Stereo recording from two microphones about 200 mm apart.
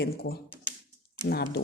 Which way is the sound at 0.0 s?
50° left (ahead or behind).